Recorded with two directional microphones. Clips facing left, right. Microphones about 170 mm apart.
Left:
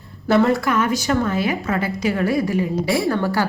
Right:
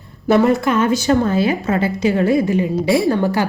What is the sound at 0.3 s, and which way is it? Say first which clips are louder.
A woman's voice: right 3 dB; 20° right (ahead or behind).